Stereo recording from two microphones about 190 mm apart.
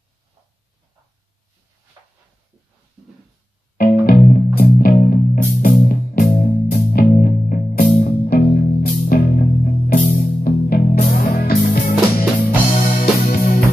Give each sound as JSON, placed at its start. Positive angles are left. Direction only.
{"t": 3.7, "sound": "music", "side_deg": 50}